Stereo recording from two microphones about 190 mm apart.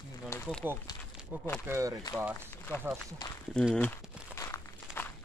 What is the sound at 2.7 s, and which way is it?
Speech, 10° left (ahead or behind).